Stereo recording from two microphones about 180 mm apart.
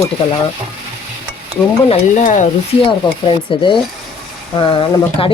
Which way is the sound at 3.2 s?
25° left (ahead or behind).